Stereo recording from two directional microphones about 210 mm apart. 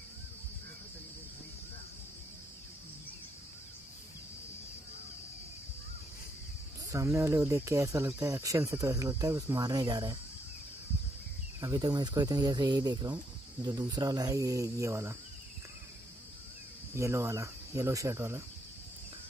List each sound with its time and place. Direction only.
6.9 s speech: 15° right (ahead or behind)
11.6 s speech: 20° right (ahead or behind)
16.9 s speech: 15° right (ahead or behind)